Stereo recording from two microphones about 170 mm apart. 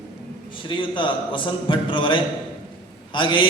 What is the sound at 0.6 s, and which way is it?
A man's voice, 30° left (ahead or behind).